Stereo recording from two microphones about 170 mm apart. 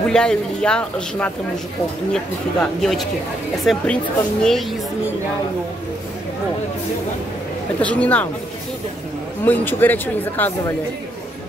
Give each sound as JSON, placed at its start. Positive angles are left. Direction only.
{"t": 0.1, "sound": "a man's voice", "side_deg": 5}
{"t": 7.8, "sound": "speech", "side_deg": 10}
{"t": 9.4, "sound": "speech", "side_deg": 10}